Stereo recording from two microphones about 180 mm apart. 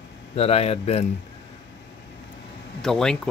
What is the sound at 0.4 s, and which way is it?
Speech, 35° left (ahead or behind).